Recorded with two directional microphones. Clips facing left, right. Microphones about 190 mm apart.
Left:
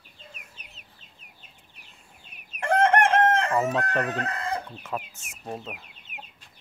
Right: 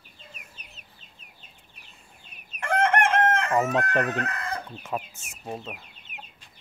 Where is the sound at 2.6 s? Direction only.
35° left (ahead or behind).